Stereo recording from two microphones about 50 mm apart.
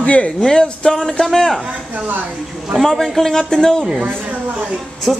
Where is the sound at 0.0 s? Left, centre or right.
Left.